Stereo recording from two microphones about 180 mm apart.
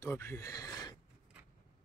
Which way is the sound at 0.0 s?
15° left (ahead or behind).